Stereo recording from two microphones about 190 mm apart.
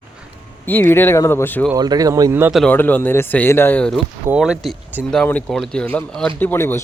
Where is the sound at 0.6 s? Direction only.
10° left (ahead or behind).